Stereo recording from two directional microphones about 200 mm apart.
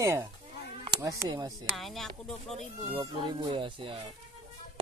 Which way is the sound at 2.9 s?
20° right (ahead or behind).